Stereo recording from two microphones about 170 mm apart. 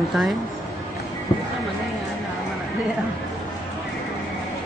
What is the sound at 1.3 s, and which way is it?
Horse, 30° left (ahead or behind).